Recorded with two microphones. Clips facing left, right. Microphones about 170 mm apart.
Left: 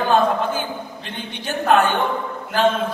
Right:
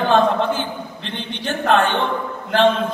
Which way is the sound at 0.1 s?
10° left (ahead or behind).